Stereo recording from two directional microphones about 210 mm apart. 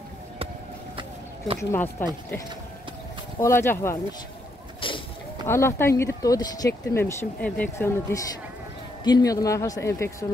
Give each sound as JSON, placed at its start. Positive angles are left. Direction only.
{"t": 1.6, "sound": "speech", "side_deg": 10}
{"t": 3.3, "sound": "speech", "side_deg": 10}
{"t": 4.7, "sound": "a sound", "side_deg": 25}
{"t": 5.5, "sound": "speech", "side_deg": 10}